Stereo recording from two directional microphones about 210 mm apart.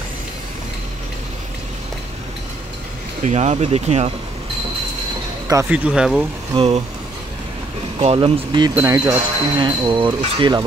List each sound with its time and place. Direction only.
3.3 s speech: 35° right (ahead or behind)
5.5 s speech: 10° right (ahead or behind)
6.5 s wind chime: 30° right (ahead or behind)
8.0 s wind chime: 25° right (ahead or behind)